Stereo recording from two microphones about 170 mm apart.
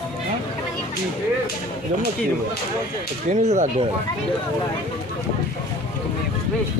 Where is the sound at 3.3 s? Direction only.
45° right (ahead or behind).